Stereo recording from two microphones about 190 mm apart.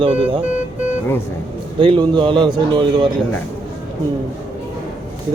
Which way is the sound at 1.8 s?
25° right (ahead or behind).